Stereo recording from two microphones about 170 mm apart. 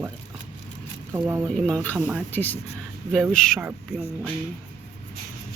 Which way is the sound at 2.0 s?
10° right (ahead or behind).